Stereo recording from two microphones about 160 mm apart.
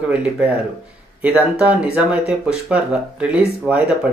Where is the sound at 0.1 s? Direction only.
10° right (ahead or behind).